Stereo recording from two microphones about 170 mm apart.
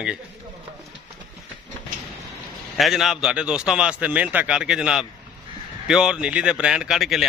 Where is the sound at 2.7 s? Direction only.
Centre (ahead or behind).